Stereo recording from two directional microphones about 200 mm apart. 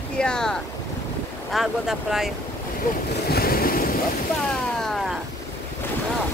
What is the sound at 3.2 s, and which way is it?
Boat, 50° left (ahead or behind).